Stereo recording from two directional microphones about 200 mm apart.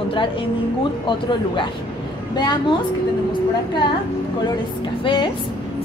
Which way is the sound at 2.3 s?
20° left (ahead or behind).